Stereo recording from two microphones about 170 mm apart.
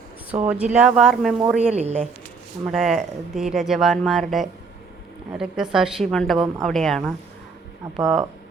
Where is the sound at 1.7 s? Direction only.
40° right (ahead or behind).